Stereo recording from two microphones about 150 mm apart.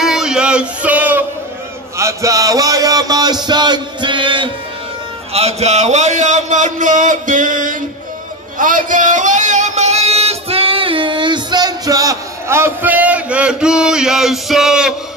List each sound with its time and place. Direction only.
0.0 s a sound: 5° right (ahead or behind); by 4.5 s 35° right (ahead or behind)
5.3 s a man's voice: 45° right (ahead or behind); by 7.7 s 60° right (ahead or behind)
8.5 s music: 60° right (ahead or behind); by 15.0 s 5° right (ahead or behind)